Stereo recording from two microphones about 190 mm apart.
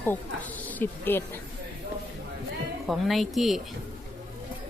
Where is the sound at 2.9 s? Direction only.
Centre (ahead or behind).